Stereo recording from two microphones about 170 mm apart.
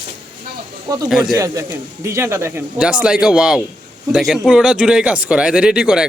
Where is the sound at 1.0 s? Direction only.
5° right (ahead or behind).